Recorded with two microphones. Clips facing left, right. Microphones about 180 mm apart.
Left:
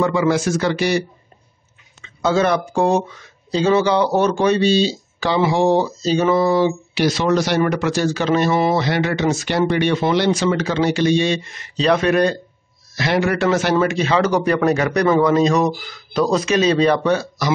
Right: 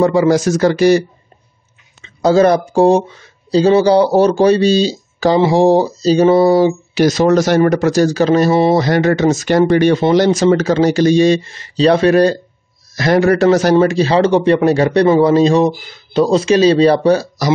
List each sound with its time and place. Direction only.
0.0 s speech: 40° right (ahead or behind)